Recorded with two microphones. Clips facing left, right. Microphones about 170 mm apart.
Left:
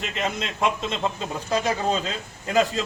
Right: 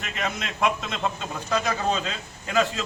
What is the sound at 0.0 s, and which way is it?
A man's voice, 30° left (ahead or behind).